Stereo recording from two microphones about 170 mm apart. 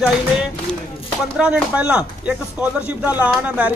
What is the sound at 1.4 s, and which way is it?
Music, 5° right (ahead or behind).